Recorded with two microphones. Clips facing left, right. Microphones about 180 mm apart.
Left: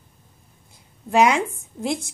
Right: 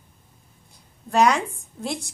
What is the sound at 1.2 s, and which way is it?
Speech, 20° left (ahead or behind).